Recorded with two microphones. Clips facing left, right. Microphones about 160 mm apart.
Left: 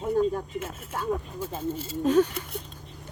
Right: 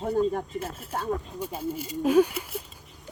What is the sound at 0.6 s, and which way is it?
Speech, 35° right (ahead or behind).